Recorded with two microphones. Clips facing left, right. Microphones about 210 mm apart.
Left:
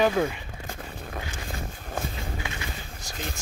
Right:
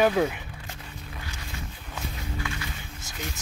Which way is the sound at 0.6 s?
50° left (ahead or behind).